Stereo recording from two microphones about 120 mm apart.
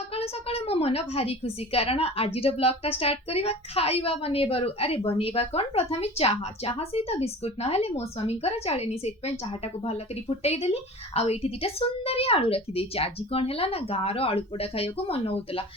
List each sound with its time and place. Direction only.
0.1 s a woman's voice: 55° left (ahead or behind)